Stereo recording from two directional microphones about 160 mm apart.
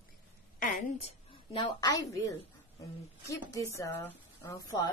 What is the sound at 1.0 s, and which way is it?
Speech, 30° left (ahead or behind).